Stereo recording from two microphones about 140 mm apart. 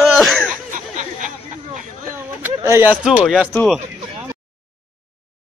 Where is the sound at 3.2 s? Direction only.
5° right (ahead or behind).